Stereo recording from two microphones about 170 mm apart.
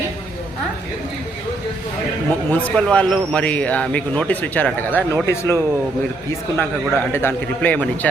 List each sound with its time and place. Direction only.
2.5 s a man's voice: 10° left (ahead or behind)
6.6 s a man's voice: 15° left (ahead or behind)